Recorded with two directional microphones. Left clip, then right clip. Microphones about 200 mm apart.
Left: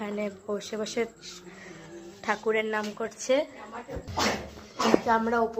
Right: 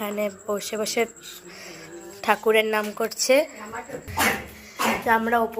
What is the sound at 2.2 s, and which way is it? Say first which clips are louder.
A woman's voice: right 7 dB; 20° right (ahead or behind).